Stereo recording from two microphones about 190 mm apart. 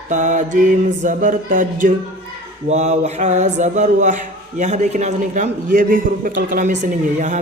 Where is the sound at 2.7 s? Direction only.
35° right (ahead or behind).